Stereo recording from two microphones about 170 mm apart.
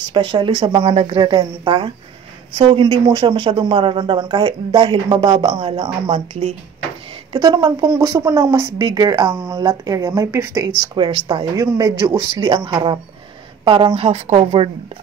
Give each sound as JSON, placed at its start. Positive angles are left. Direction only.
{"t": 0.1, "sound": "speech", "side_deg": -25}
{"t": 7.3, "sound": "speech", "side_deg": -25}
{"t": 10.8, "sound": "speech", "side_deg": -30}